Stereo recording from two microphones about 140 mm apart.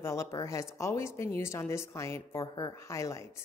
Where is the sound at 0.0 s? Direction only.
20° left (ahead or behind).